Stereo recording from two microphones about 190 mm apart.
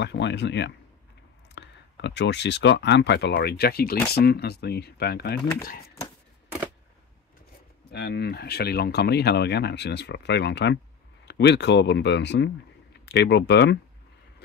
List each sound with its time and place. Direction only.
0.0 s speech: 65° left (ahead or behind)
7.9 s speech: 60° left (ahead or behind)